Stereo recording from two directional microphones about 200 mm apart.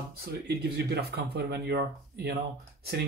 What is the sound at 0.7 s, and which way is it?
Speech, 55° right (ahead or behind).